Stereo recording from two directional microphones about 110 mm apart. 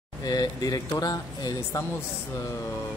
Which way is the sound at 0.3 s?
35° left (ahead or behind).